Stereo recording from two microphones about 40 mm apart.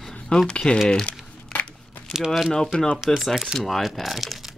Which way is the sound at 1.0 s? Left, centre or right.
Left.